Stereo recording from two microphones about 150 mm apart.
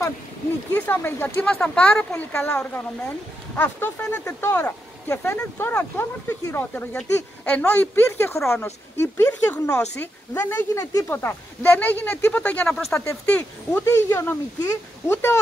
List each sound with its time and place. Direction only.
0.7 s speech: 15° left (ahead or behind)
13.0 s speech: 20° left (ahead or behind)